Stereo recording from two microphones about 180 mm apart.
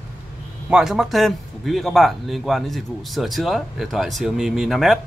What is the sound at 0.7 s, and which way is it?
Speech, 5° right (ahead or behind).